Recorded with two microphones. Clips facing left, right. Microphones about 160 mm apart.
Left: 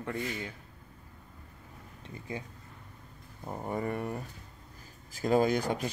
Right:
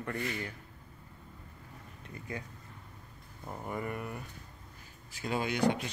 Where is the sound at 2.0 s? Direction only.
25° left (ahead or behind).